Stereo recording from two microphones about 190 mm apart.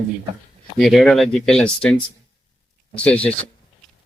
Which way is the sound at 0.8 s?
Centre (ahead or behind).